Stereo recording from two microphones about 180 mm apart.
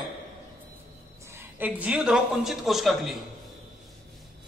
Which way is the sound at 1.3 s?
10° right (ahead or behind).